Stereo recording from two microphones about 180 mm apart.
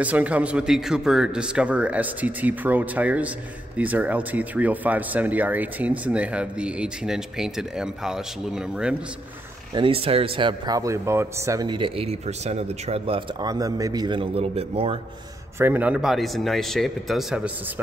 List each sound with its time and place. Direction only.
0.0 s speech: 5° right (ahead or behind)
9.8 s speech: 30° right (ahead or behind)
15.6 s speech: 10° right (ahead or behind)